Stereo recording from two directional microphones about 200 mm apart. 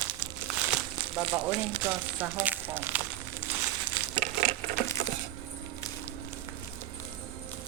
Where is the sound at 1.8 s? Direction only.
10° right (ahead or behind).